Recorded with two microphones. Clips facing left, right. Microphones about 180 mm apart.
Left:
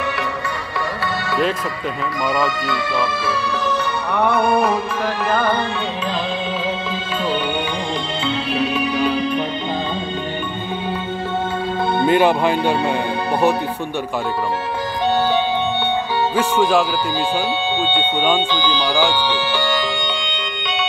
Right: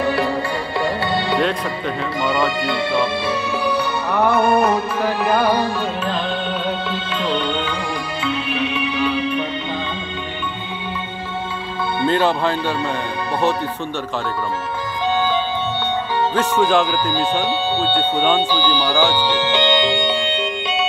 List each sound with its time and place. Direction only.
2.2 s speech: 25° right (ahead or behind)
4.2 s music: 5° right (ahead or behind)
8.3 s music: 35° left (ahead or behind)
12.1 s speech: 15° left (ahead or behind)
16.3 s speech: 10° left (ahead or behind)
18.7 s speech: 15° left (ahead or behind)
19.3 s music: 20° right (ahead or behind)